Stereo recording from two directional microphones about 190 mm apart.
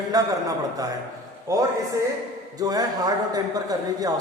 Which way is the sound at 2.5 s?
20° right (ahead or behind).